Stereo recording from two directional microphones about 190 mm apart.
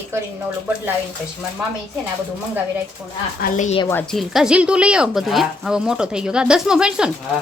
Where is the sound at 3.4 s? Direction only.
40° left (ahead or behind).